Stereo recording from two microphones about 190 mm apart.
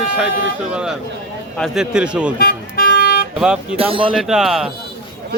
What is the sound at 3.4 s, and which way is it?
Speech, 5° right (ahead or behind).